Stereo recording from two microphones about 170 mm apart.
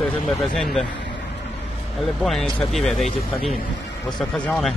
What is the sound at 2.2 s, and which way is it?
A man's voice, centre (ahead or behind).